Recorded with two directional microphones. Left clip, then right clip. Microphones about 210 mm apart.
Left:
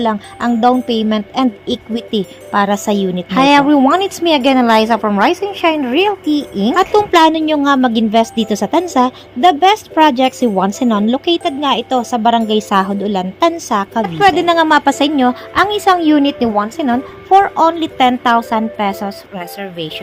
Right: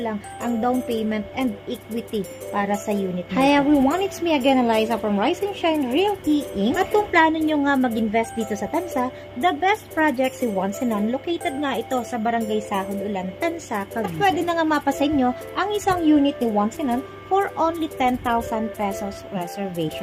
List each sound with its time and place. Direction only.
0.0 s speech: 30° left (ahead or behind)